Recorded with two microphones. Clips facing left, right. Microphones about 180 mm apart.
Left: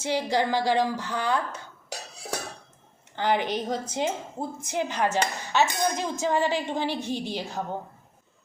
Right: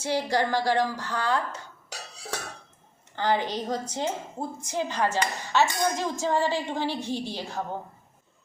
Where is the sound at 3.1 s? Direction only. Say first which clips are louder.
Left 1 dB; 20° left (ahead or behind).